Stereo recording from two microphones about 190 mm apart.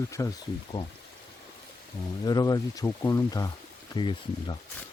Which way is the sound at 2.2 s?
20° left (ahead or behind).